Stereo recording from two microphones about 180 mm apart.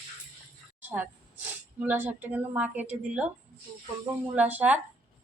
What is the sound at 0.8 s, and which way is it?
Speech, 10° right (ahead or behind).